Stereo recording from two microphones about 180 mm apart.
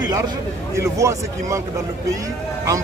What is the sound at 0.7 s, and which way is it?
Speech, 15° right (ahead or behind).